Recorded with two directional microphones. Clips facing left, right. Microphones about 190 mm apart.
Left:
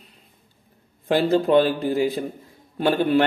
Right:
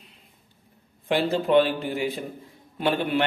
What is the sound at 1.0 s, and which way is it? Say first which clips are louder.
Mantra: left 4 dB; 40° left (ahead or behind).